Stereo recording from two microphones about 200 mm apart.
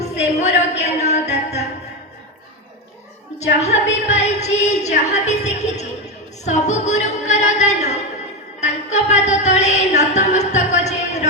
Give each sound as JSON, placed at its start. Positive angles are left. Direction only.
{"t": 0.0, "sound": "music", "side_deg": 35}
{"t": 3.3, "sound": "a woman's voice", "side_deg": 35}
{"t": 6.4, "sound": "music", "side_deg": 35}